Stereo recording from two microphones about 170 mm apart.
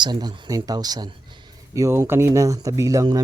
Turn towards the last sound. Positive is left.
turn(degrees=-20)  # may be behind; listen again after turning